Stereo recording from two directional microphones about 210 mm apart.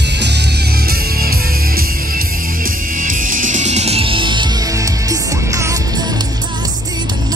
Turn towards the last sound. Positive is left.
turn(degrees=-15)  # may be behind; listen again after turning